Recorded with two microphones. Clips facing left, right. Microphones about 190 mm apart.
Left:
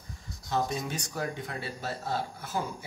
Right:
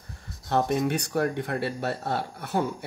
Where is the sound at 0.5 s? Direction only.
60° right (ahead or behind).